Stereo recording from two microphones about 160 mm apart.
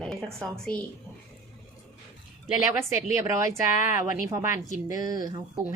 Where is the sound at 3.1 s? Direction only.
20° right (ahead or behind).